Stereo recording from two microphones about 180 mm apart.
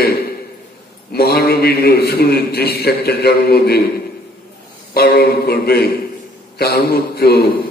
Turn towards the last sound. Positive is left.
turn(degrees=60)  # may be behind; listen again after turning